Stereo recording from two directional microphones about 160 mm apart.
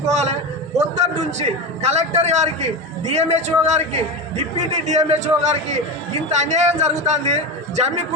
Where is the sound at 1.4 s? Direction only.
40° right (ahead or behind).